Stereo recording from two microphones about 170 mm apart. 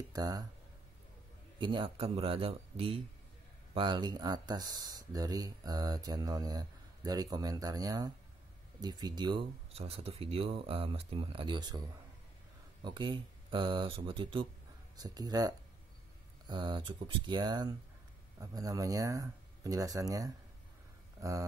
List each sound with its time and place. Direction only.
0.1 s speech: 20° right (ahead or behind)
1.6 s speech: 30° right (ahead or behind)
12.8 s speech: 30° right (ahead or behind)